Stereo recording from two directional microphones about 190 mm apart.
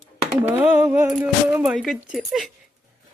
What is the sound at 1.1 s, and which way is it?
Speech, 5° right (ahead or behind).